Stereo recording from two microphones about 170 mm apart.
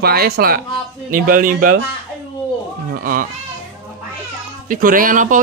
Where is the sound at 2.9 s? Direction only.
55° right (ahead or behind).